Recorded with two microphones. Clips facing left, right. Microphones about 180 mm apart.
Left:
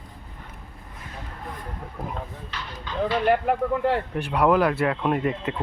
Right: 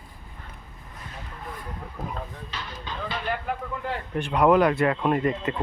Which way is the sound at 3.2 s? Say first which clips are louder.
Left 9 dB; 65° left (ahead or behind).